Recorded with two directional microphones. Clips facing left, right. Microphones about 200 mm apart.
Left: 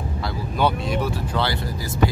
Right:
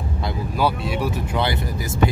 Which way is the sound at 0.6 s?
5° right (ahead or behind).